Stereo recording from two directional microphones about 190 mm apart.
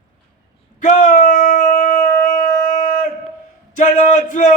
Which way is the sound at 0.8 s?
40° left (ahead or behind).